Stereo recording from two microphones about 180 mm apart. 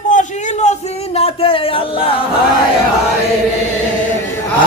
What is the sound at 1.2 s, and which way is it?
Speech, 30° left (ahead or behind).